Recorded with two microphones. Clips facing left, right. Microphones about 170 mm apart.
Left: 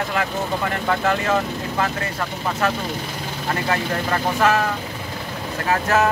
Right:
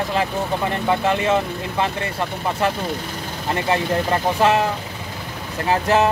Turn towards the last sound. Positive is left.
turn(degrees=-25)  # may be behind; listen again after turning